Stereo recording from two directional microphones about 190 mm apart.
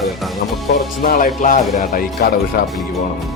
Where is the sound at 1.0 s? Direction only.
50° left (ahead or behind).